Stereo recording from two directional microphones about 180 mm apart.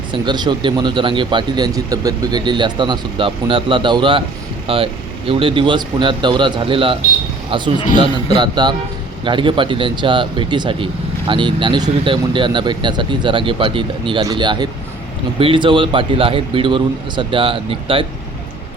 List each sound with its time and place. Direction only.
0.1 s speech: 25° right (ahead or behind)